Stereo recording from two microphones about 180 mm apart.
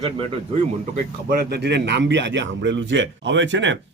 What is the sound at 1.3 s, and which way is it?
A man's voice, 60° right (ahead or behind).